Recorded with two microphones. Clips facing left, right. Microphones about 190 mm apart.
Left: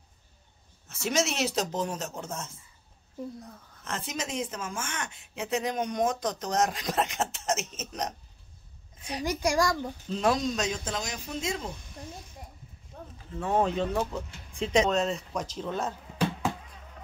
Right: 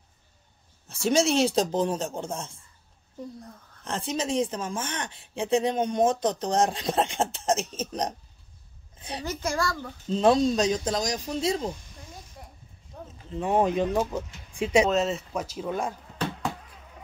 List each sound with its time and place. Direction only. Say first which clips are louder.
0.8 s speech: right 5 dB; 30° right (ahead or behind)
3.8 s speech: right 5 dB; 30° right (ahead or behind)
9.2 s a child's voice: left 3 dB; 15° left (ahead or behind)
10.0 s speech: right 6 dB; 30° right (ahead or behind)
13.3 s speech: right 3 dB; 15° right (ahead or behind)
16.2 s a sound: left 2 dB; 10° left (ahead or behind)